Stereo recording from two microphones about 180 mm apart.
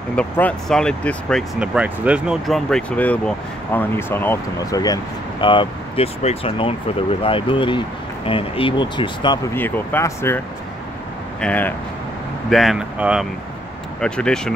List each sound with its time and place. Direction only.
0.1 s speech: 5° left (ahead or behind); by 9.4 s 25° left (ahead or behind)
9.5 s speech: 15° left (ahead or behind)
11.4 s speech: 10° left (ahead or behind)
12.4 s speech: centre (ahead or behind)